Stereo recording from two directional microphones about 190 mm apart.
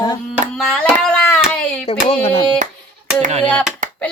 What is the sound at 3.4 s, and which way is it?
Speech, centre (ahead or behind).